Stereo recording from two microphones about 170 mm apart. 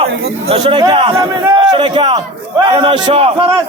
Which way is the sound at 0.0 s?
35° right (ahead or behind).